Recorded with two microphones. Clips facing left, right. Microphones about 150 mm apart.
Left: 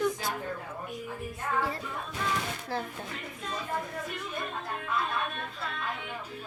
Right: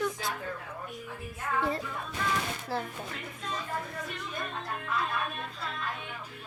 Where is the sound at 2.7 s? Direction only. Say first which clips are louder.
Even; 5° right (ahead or behind).